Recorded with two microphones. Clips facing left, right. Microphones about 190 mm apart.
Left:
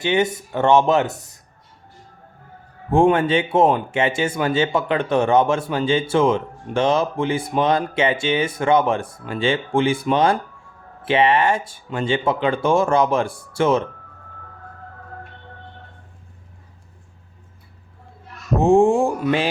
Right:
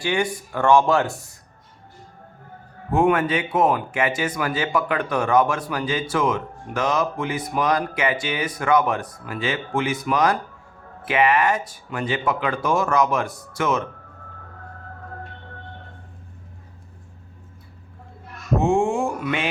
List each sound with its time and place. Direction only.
0.0 s speech: 20° left (ahead or behind)
2.9 s speech: 30° left (ahead or behind)
18.6 s speech: 35° left (ahead or behind)